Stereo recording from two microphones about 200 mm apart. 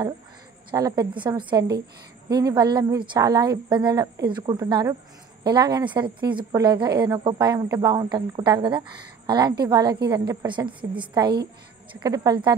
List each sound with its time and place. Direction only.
0.7 s speech: 20° right (ahead or behind)